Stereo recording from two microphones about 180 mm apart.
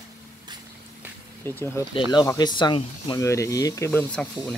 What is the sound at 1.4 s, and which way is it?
Speech, 10° left (ahead or behind).